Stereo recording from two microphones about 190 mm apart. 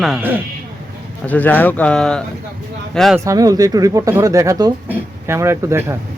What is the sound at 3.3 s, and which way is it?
Speech, 20° right (ahead or behind).